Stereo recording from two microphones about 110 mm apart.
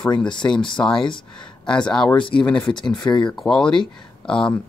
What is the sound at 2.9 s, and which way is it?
Speech, 45° left (ahead or behind).